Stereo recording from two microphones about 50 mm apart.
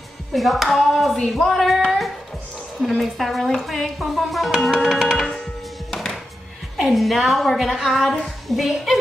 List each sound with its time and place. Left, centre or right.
0.3 s speech: centre
3.0 s speech: centre
5.9 s music: centre
6.8 s speech: centre